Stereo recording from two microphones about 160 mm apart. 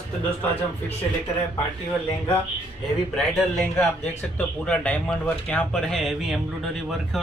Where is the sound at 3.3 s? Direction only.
Centre (ahead or behind).